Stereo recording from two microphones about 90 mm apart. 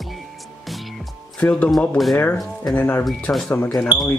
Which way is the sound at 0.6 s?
Centre (ahead or behind).